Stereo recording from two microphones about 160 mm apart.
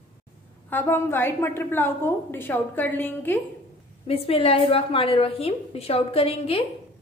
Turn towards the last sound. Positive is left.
turn(degrees=35)  # may be behind; listen again after turning